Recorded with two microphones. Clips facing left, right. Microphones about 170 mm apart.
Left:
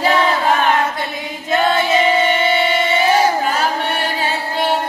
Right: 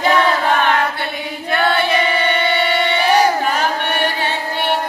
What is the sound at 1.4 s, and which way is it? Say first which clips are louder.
Female singing: left 1 dB; 20° left (ahead or behind).